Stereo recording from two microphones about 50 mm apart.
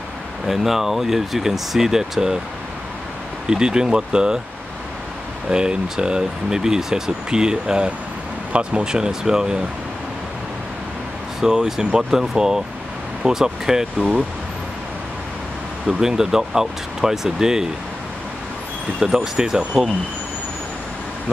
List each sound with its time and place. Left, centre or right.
0.5 s speech: centre
3.4 s speech: centre
5.5 s speech: centre
11.4 s speech: centre
15.9 s speech: centre
18.9 s speech: centre